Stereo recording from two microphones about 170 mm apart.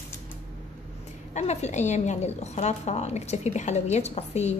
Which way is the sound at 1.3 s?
40° left (ahead or behind).